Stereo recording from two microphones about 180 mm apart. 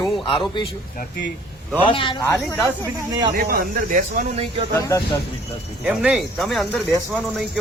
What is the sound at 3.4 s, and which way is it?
Speech, 50° right (ahead or behind).